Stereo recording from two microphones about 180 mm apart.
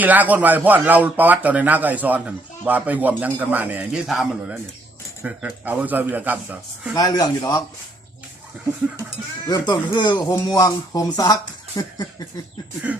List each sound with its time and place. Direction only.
0.0 s speech: 10° right (ahead or behind)
6.9 s speech: 20° left (ahead or behind)
9.5 s speech: 25° left (ahead or behind)
11.8 s a sound: 15° left (ahead or behind)
12.9 s speech: 10° right (ahead or behind)